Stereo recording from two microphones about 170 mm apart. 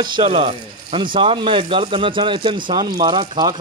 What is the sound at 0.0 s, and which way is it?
Speech, 30° right (ahead or behind).